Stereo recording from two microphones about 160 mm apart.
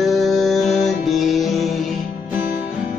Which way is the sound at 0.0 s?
Centre (ahead or behind).